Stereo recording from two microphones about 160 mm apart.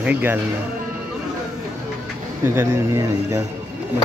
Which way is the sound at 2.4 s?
15° right (ahead or behind).